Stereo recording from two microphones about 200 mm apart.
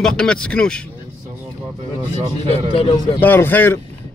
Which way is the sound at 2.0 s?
30° right (ahead or behind).